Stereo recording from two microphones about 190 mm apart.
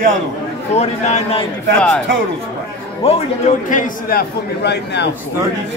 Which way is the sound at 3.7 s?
45° left (ahead or behind).